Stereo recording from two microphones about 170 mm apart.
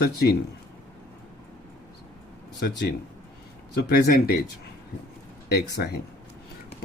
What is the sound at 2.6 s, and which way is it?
Speech, 65° left (ahead or behind).